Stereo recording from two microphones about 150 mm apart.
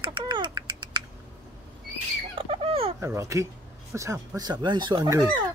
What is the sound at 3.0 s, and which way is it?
Speech, 20° right (ahead or behind).